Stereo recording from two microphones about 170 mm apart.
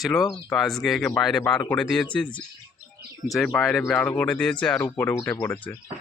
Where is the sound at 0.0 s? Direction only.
Centre (ahead or behind).